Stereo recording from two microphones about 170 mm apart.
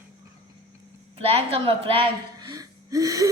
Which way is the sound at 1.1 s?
35° right (ahead or behind).